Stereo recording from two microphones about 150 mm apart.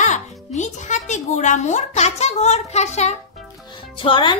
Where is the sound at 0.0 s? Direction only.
55° left (ahead or behind).